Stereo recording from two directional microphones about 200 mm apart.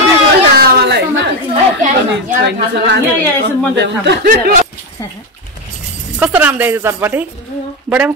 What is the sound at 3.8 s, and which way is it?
Speech, 55° right (ahead or behind).